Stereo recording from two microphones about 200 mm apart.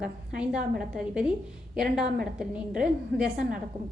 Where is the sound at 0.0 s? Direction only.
5° right (ahead or behind).